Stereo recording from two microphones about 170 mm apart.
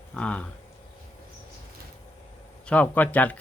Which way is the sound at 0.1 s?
5° left (ahead or behind).